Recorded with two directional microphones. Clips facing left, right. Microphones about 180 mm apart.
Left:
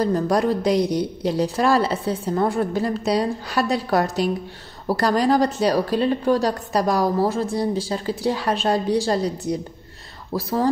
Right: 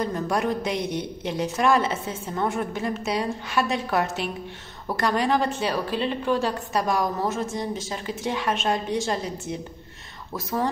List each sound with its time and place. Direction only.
0.0 s a woman's voice: 35° left (ahead or behind)